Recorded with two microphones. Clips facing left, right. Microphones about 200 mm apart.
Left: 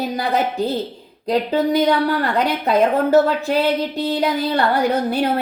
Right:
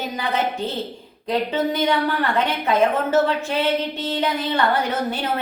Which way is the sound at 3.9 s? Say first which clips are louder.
Left 5 dB; 35° left (ahead or behind).